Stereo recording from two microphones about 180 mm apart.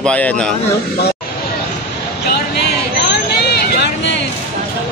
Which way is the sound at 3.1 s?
65° left (ahead or behind).